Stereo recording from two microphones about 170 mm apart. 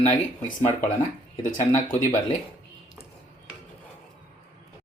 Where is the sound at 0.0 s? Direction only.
45° left (ahead or behind).